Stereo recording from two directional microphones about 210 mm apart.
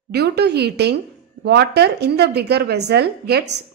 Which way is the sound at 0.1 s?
50° right (ahead or behind).